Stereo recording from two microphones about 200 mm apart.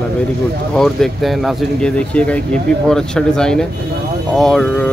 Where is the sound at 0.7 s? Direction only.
Centre (ahead or behind).